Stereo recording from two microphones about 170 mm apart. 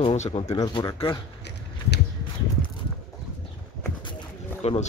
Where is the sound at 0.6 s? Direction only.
25° left (ahead or behind).